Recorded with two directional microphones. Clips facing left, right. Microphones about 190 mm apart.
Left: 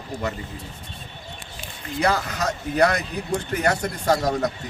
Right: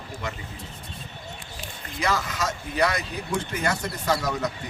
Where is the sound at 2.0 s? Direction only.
60° left (ahead or behind).